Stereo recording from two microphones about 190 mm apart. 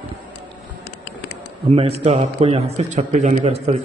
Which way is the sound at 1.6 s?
30° right (ahead or behind).